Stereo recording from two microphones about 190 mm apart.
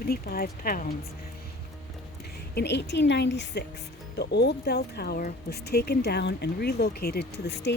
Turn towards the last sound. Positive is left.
turn(degrees=60)  # may be behind; listen again after turning